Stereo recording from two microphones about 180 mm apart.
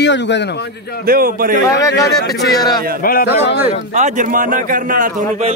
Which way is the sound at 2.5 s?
20° left (ahead or behind).